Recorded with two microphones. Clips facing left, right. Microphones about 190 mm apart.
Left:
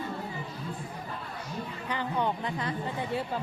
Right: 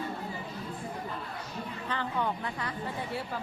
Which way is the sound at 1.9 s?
15° left (ahead or behind).